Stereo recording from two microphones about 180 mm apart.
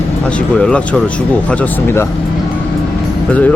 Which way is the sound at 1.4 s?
10° left (ahead or behind).